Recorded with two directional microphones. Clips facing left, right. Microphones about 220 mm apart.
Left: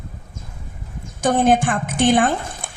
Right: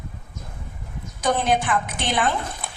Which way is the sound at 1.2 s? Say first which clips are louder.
Left 5 dB; 50° left (ahead or behind).